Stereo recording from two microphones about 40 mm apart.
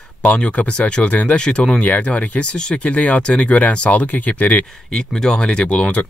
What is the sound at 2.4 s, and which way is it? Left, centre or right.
Speech, left.